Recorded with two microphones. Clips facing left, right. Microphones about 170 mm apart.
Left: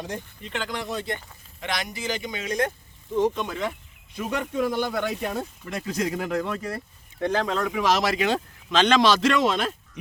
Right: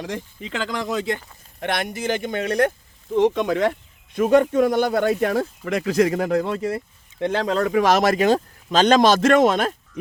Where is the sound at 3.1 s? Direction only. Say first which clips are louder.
Right 6 dB; 90° right; by 3.7 s 70° right (ahead or behind).